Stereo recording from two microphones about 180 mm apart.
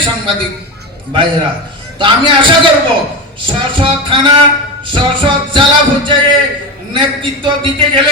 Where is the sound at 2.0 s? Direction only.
30° right (ahead or behind).